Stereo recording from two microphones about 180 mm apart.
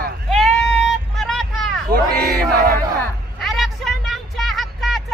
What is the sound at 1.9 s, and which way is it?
Music, 60° right (ahead or behind).